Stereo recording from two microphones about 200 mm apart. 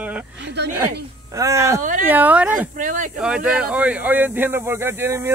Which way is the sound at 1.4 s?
15° right (ahead or behind).